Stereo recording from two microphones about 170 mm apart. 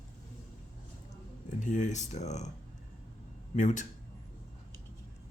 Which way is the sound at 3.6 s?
45° left (ahead or behind).